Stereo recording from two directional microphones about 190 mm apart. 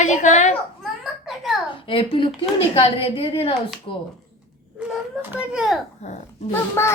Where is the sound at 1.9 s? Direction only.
25° left (ahead or behind).